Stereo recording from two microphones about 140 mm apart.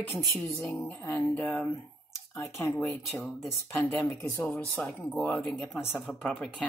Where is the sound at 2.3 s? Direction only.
20° left (ahead or behind).